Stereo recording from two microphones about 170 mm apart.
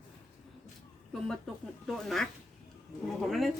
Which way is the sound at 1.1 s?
Centre (ahead or behind).